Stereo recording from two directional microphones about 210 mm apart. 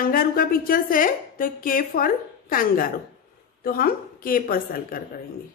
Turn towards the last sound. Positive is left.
turn(degrees=45)  # may be behind; listen again after turning